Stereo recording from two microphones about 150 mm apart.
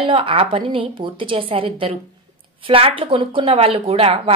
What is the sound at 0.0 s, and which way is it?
A woman's voice, 40° right (ahead or behind).